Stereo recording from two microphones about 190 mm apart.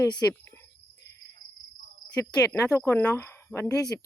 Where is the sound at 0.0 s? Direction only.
20° left (ahead or behind).